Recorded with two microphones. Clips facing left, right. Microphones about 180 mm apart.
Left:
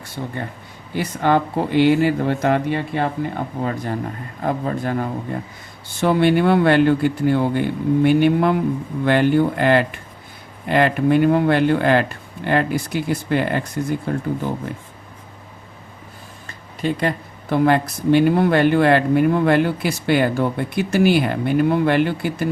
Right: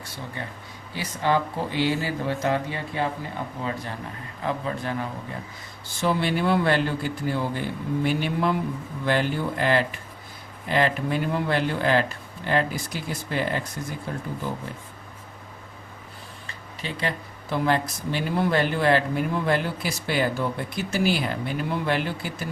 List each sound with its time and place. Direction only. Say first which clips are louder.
0.9 s speech: left 6 dB; 60° left (ahead or behind)
3.6 s a man's voice: left 9 dB; 50° left (ahead or behind)
16.5 s speech: left 12 dB; 50° left (ahead or behind)